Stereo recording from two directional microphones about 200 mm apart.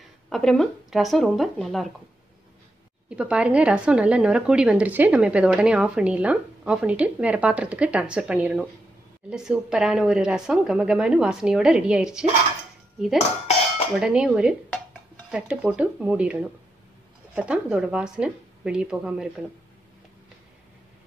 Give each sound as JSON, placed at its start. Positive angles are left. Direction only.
{"t": 0.3, "sound": "a woman's voice", "side_deg": 0}
{"t": 3.1, "sound": "a woman's voice", "side_deg": -5}
{"t": 13.9, "sound": "a woman's voice", "side_deg": -5}